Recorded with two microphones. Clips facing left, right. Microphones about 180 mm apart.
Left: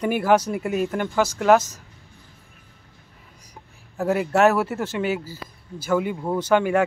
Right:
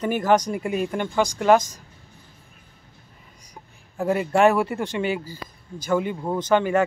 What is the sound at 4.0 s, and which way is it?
Speech, 5° left (ahead or behind).